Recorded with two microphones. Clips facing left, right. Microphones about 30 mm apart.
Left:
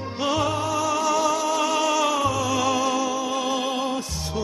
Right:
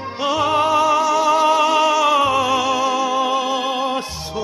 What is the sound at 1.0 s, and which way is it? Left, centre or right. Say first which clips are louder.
Music: right 5 dB; centre.